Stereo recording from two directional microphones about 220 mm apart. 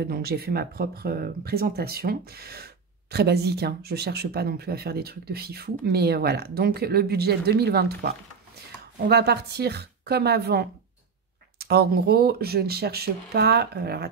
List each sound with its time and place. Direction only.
0.0 s speech: 45° right (ahead or behind)